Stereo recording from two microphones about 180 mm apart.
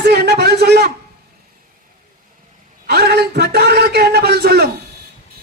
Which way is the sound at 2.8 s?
65° right (ahead or behind).